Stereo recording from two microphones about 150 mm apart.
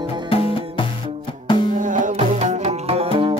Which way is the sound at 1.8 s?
60° right (ahead or behind).